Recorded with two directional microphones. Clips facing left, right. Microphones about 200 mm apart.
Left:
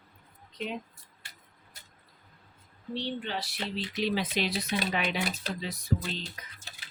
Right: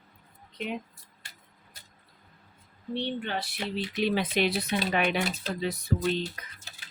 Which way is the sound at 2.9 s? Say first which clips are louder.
Right 2 dB; 55° right (ahead or behind).